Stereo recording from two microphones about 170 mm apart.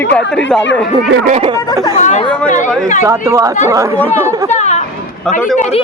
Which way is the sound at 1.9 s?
45° left (ahead or behind).